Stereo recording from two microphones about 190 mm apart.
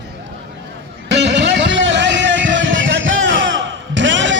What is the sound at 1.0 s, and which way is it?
Music, 65° right (ahead or behind).